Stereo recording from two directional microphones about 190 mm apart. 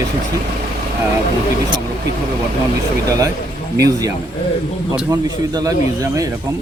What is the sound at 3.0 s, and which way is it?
Speech, 15° right (ahead or behind).